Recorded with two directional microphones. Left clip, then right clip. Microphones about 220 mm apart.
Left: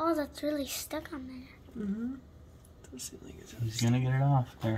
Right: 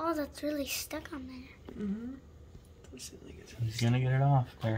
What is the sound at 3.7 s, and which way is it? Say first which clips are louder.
Speech: left 1 dB; 15° right (ahead or behind).